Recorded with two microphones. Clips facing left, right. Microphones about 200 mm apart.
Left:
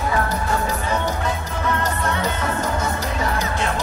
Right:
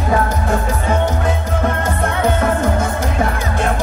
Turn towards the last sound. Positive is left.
turn(degrees=-50)  # may be behind; listen again after turning